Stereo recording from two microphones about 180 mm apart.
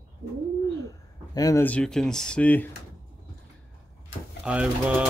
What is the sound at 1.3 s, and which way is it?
Speech, 20° left (ahead or behind).